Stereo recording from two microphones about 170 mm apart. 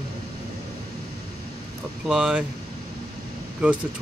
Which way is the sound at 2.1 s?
5° right (ahead or behind).